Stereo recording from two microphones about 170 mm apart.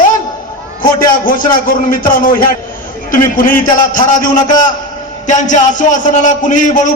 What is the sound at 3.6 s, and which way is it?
A man's voice, 50° left (ahead or behind).